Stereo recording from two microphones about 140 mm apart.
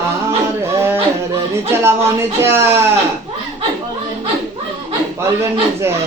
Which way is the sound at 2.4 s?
20° right (ahead or behind).